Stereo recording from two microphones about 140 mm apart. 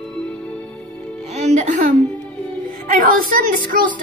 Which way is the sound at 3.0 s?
75° right (ahead or behind).